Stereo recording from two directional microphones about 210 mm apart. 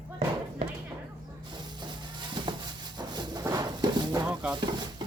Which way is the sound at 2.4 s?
20° right (ahead or behind).